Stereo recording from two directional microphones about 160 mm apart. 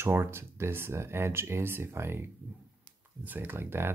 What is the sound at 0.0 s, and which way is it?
Speech, 15° right (ahead or behind).